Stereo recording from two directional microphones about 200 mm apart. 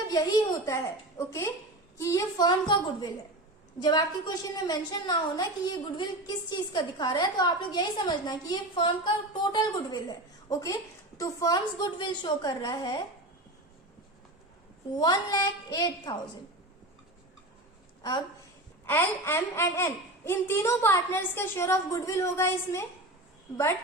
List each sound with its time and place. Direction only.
0.1 s a woman's voice: 20° left (ahead or behind)
14.9 s a woman's voice: 20° left (ahead or behind)
18.9 s speech: 10° left (ahead or behind)